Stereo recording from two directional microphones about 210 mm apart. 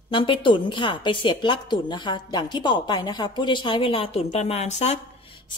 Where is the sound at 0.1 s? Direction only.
25° left (ahead or behind).